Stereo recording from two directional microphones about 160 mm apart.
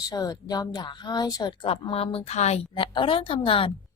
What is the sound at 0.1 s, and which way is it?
A woman's voice, 25° left (ahead or behind).